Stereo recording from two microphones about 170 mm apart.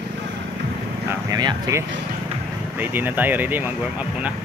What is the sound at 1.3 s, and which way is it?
Speech, 20° right (ahead or behind).